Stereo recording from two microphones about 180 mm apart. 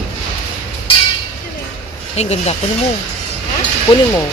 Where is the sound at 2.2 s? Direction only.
40° left (ahead or behind).